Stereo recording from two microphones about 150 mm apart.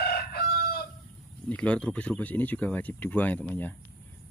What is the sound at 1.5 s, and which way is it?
Speech, 10° left (ahead or behind).